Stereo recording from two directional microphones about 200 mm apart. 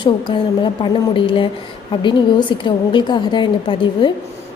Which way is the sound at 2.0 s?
25° left (ahead or behind).